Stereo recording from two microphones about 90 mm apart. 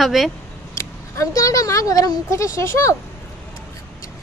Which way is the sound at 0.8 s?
35° left (ahead or behind).